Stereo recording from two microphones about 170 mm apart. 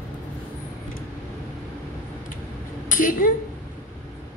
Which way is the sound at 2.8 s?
55° left (ahead or behind).